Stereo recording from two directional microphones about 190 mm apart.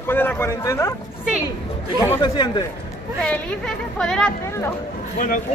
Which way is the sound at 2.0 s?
15° left (ahead or behind).